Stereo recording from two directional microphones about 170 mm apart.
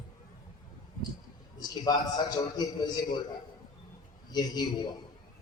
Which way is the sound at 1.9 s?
25° left (ahead or behind).